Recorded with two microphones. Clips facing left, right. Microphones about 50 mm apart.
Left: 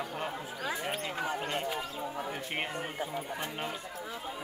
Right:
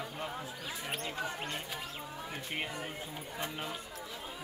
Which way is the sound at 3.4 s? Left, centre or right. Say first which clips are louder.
Left 2 dB; left.